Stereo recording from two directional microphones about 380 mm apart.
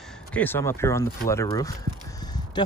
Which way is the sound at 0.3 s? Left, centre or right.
Centre.